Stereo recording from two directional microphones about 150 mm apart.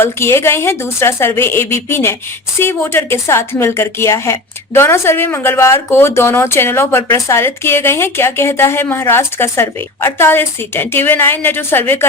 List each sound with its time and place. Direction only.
0.0 s speech: 15° left (ahead or behind)